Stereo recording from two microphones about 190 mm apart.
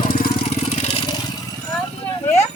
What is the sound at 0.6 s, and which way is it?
Vehicle, 35° left (ahead or behind).